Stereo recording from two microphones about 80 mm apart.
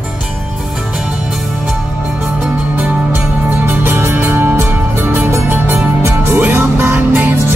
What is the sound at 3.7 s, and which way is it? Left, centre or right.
Music, right.